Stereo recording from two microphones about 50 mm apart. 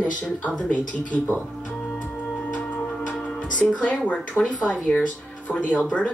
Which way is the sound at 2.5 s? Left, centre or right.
Left.